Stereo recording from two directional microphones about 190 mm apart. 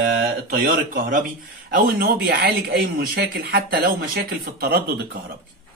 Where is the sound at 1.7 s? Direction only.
55° right (ahead or behind).